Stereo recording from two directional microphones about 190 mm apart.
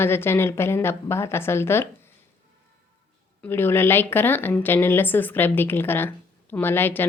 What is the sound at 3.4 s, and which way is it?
A woman's voice, 10° left (ahead or behind).